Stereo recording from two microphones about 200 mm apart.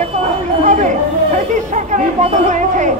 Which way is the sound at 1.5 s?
35° right (ahead or behind).